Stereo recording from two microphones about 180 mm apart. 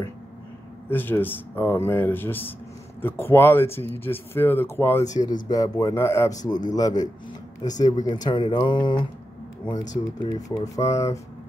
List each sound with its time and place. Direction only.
0.8 s speech: 10° left (ahead or behind)